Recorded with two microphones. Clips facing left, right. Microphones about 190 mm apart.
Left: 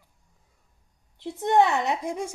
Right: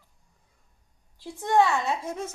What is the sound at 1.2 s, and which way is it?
A woman's voice, 20° left (ahead or behind).